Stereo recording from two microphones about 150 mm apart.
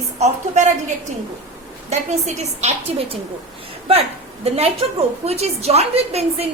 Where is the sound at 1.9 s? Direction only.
50° right (ahead or behind).